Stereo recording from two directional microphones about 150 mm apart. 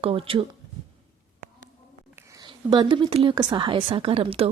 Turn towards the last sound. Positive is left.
turn(degrees=-40)  # may be behind; listen again after turning